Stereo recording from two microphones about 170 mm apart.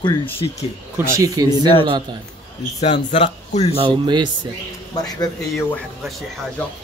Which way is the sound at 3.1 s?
40° left (ahead or behind).